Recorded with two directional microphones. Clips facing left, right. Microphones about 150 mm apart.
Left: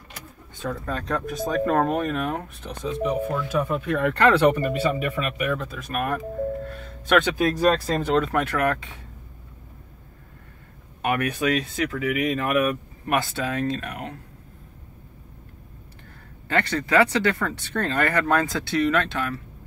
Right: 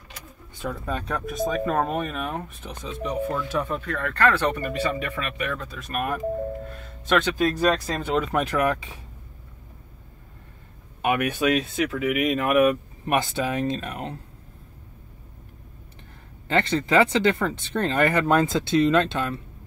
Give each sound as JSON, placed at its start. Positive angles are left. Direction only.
{"t": 0.6, "sound": "speech", "side_deg": -15}
{"t": 3.9, "sound": "speech", "side_deg": 15}
{"t": 7.3, "sound": "speech", "side_deg": 10}
{"t": 7.9, "sound": "speech", "side_deg": -5}
{"t": 11.1, "sound": "speech", "side_deg": -15}
{"t": 11.5, "sound": "speech", "side_deg": -5}
{"t": 11.9, "sound": "speech", "side_deg": -15}
{"t": 16.4, "sound": "speech", "side_deg": -25}